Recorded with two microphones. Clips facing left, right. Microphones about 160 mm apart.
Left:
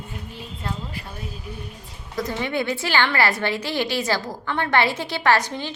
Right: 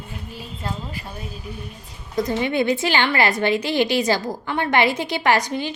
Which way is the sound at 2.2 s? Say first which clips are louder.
Right 4 dB; 20° right (ahead or behind).